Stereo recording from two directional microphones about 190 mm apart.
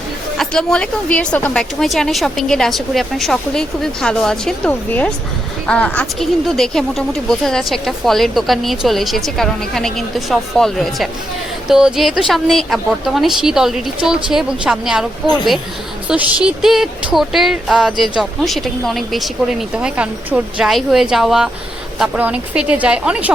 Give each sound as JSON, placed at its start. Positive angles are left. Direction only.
{"t": 0.3, "sound": "a woman's voice", "side_deg": 5}
{"t": 16.0, "sound": "a woman's voice", "side_deg": -5}